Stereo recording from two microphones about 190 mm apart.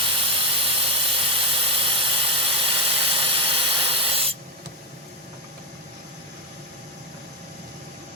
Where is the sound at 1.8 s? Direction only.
30° right (ahead or behind).